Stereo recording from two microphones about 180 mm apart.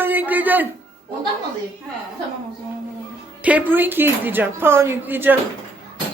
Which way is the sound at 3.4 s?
10° right (ahead or behind).